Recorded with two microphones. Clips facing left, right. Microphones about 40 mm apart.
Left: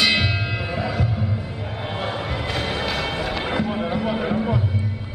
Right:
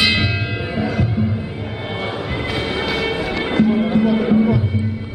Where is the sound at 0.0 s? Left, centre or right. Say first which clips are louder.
Right 2 dB; centre.